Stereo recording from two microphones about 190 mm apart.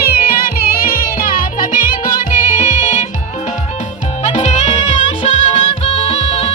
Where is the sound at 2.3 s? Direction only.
45° left (ahead or behind).